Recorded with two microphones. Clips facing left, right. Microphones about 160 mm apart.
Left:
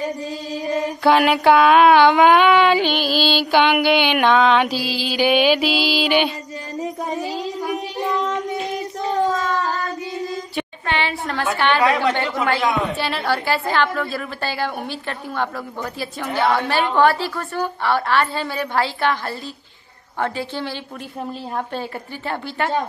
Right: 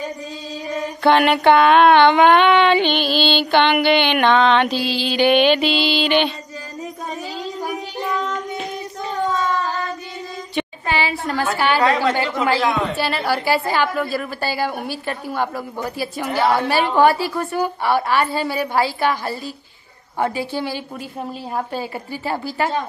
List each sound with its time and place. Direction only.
0.7 s mantra: centre (ahead or behind)
6.8 s child singing: 20° left (ahead or behind)
9.3 s a sound: 45° left (ahead or behind)
10.5 s a sound: 5° right (ahead or behind)
11.5 s mantra: 5° right (ahead or behind)
12.9 s a woman's voice: centre (ahead or behind)
22.3 s mantra: 5° right (ahead or behind)